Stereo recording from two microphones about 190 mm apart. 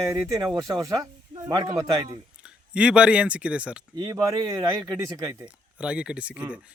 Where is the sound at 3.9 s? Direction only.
20° right (ahead or behind).